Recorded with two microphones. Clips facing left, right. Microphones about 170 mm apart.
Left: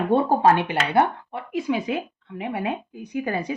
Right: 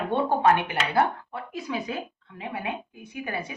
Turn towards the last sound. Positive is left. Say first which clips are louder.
# left 7 dB
turn(degrees=40)  # may be behind; listen again after turning